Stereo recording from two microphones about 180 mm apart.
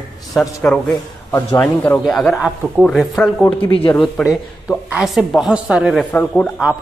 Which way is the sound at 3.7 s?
30° left (ahead or behind).